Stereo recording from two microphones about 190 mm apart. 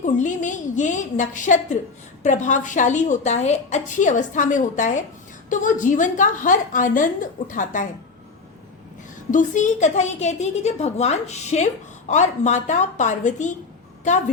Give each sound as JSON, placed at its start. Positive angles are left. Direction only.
{"t": 0.0, "sound": "a woman's voice", "side_deg": 40}
{"t": 9.3, "sound": "a woman's voice", "side_deg": 40}